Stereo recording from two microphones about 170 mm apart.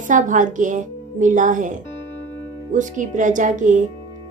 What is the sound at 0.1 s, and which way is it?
A woman's voice, 50° right (ahead or behind).